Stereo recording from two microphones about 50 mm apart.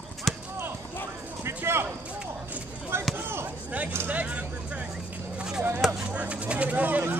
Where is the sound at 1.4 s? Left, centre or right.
Right.